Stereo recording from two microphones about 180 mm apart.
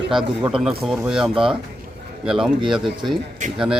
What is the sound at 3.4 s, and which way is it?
Speech, 45° right (ahead or behind).